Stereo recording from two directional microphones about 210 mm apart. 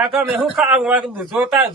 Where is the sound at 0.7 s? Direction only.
5° right (ahead or behind).